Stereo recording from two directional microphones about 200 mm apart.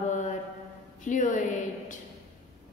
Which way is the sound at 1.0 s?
40° left (ahead or behind).